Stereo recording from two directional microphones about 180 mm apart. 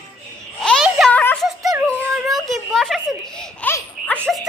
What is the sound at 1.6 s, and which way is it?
Music, 20° right (ahead or behind).